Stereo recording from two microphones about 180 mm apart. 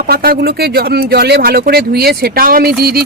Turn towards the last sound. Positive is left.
turn(degrees=-60)  # may be behind; listen again after turning